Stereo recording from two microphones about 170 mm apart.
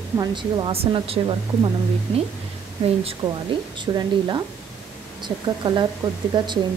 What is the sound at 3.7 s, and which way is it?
Speech, 25° right (ahead or behind).